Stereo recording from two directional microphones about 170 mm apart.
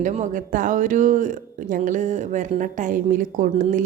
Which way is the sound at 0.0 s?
45° right (ahead or behind).